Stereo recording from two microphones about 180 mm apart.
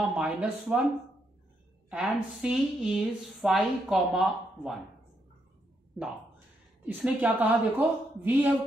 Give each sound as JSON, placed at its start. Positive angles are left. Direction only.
{"t": 0.0, "sound": "speech", "side_deg": -5}
{"t": 1.9, "sound": "a woman's voice", "side_deg": -5}
{"t": 6.8, "sound": "a woman's voice", "side_deg": -10}